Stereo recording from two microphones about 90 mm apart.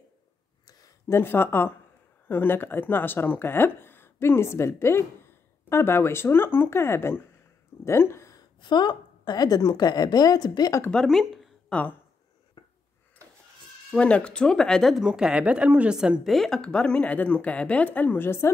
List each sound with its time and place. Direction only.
0.7 s a sound: 40° left (ahead or behind)
1.1 s speech: 25° left (ahead or behind)
8.5 s a woman's voice: 55° left (ahead or behind)
10.9 s speech: 5° left (ahead or behind)
12.6 s a sound: 50° left (ahead or behind)
13.9 s speech: 10° left (ahead or behind)
15.0 s speech: 10° right (ahead or behind)
16.3 s speech: 5° left (ahead or behind); by 18.5 s 25° left (ahead or behind)